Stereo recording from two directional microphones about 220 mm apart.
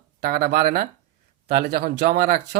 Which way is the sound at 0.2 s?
45° right (ahead or behind).